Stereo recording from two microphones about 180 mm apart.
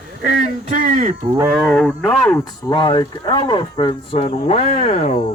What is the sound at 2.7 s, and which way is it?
Speech, 25° left (ahead or behind).